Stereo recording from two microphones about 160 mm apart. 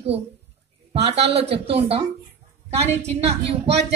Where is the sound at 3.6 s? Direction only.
90° right.